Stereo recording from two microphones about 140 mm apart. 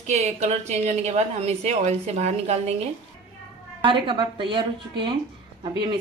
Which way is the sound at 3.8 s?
35° right (ahead or behind).